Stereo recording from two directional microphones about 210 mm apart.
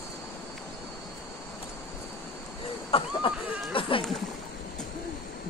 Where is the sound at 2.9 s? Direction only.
25° left (ahead or behind).